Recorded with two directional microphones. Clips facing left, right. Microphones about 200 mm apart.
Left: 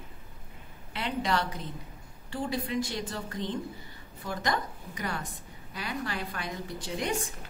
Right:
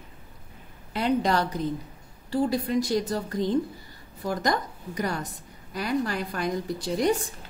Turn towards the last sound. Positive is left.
turn(degrees=-35)  # may be behind; listen again after turning